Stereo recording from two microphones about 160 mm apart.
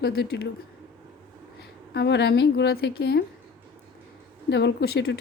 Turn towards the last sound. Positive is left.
turn(degrees=85)